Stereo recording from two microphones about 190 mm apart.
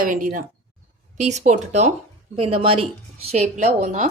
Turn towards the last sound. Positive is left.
turn(degrees=-40)  # may be behind; listen again after turning